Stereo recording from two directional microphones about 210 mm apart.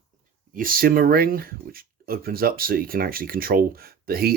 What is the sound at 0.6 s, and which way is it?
Speech, 40° right (ahead or behind).